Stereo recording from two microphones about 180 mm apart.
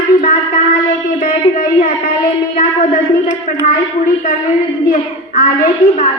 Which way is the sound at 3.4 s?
50° left (ahead or behind).